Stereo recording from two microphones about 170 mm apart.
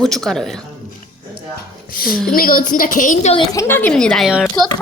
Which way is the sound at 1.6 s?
60° left (ahead or behind).